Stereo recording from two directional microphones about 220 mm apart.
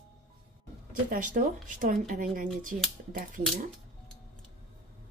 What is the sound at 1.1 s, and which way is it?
Speech, 35° right (ahead or behind).